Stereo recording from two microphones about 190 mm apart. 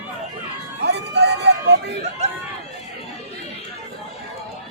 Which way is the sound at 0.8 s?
60° right (ahead or behind).